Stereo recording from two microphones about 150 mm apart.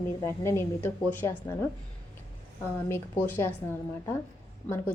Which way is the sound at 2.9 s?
15° left (ahead or behind).